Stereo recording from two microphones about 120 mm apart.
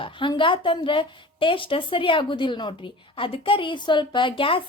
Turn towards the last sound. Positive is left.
turn(degrees=45)  # may be behind; listen again after turning